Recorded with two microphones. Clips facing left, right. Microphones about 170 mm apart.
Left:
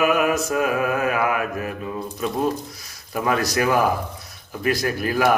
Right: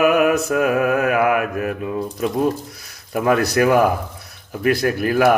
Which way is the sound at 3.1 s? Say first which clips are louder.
Right 5 dB; 55° right (ahead or behind).